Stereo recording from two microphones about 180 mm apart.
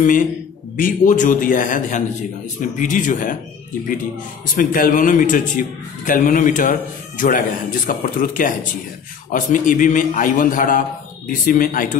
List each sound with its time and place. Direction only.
0.7 s a man's voice: 45° left (ahead or behind)
4.6 s a man's voice: 50° left (ahead or behind)